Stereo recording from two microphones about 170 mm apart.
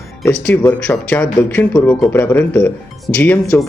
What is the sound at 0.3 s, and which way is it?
Speech, 10° left (ahead or behind).